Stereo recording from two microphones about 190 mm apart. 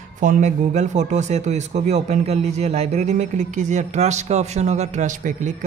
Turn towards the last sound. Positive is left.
turn(degrees=-40)  # may be behind; listen again after turning